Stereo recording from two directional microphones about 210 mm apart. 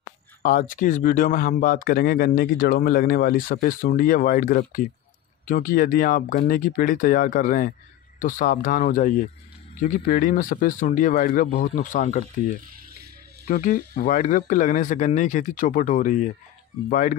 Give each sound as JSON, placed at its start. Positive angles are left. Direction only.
{"t": 0.4, "sound": "speech", "side_deg": 40}
{"t": 12.7, "sound": "music", "side_deg": -50}
{"t": 13.5, "sound": "speech", "side_deg": 40}